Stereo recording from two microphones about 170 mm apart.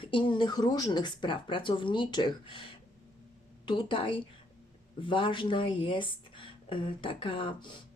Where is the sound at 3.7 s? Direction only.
25° left (ahead or behind).